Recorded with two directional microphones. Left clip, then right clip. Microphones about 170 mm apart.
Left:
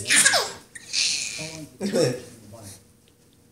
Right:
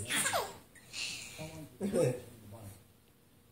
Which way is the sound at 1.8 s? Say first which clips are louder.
Left 9 dB; centre (ahead or behind).